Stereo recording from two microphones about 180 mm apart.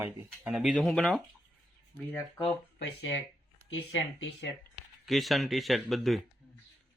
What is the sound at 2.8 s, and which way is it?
Speech, 90° left.